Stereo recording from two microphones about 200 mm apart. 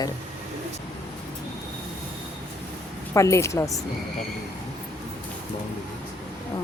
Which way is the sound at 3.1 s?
15° left (ahead or behind).